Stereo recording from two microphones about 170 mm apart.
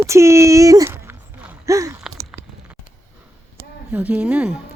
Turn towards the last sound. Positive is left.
turn(degrees=-5)  # may be behind; listen again after turning